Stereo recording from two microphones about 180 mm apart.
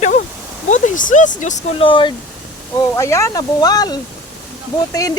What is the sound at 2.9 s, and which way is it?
Speech, 15° left (ahead or behind).